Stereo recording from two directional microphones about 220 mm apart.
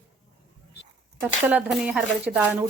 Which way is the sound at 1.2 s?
5° right (ahead or behind).